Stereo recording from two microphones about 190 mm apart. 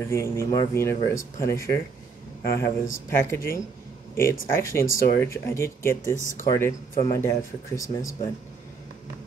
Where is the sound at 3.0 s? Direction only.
15° left (ahead or behind).